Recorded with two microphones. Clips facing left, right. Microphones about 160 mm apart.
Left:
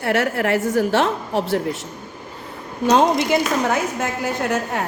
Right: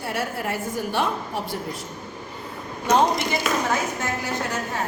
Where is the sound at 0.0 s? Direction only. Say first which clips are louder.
Left 8 dB; 75° left (ahead or behind).